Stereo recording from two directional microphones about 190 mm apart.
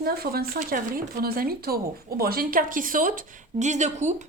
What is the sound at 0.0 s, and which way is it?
Speech, 55° right (ahead or behind).